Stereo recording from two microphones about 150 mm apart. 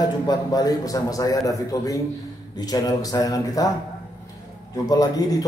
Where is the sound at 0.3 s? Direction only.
25° left (ahead or behind).